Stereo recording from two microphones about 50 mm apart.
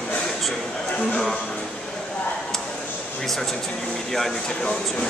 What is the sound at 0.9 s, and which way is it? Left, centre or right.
Speech, centre.